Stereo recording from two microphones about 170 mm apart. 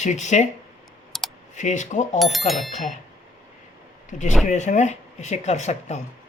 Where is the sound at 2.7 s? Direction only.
45° left (ahead or behind).